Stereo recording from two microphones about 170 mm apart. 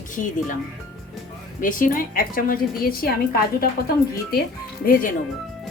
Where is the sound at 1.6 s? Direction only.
55° left (ahead or behind).